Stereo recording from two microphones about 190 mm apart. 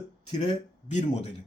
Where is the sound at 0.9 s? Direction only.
40° left (ahead or behind).